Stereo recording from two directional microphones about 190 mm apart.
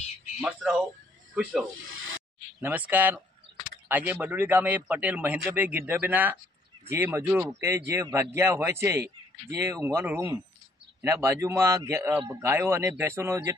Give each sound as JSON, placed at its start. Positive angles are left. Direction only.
{"t": 0.4, "sound": "speech", "side_deg": -5}
{"t": 2.0, "sound": "snake", "side_deg": -90}
{"t": 2.6, "sound": "a man's voice", "side_deg": -10}
{"t": 3.5, "sound": "a sound", "side_deg": -70}
{"t": 3.9, "sound": "a man's voice", "side_deg": -10}